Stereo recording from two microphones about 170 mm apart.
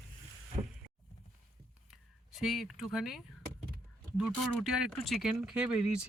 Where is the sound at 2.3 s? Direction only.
Centre (ahead or behind).